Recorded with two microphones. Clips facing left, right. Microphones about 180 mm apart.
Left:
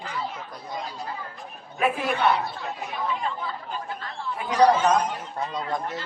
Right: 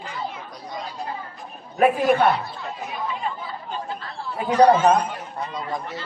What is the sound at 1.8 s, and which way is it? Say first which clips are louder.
Speech: right 7 dB; 45° right (ahead or behind).